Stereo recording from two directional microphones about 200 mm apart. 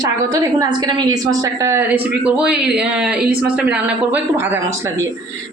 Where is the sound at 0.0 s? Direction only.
20° right (ahead or behind).